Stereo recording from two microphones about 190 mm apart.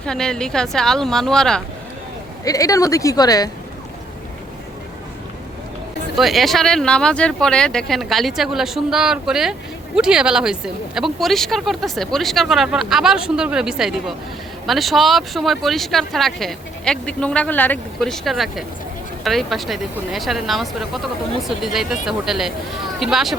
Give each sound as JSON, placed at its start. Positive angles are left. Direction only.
{"t": 0.0, "sound": "speech", "side_deg": 5}
{"t": 2.4, "sound": "speech", "side_deg": 20}
{"t": 6.1, "sound": "speech", "side_deg": 0}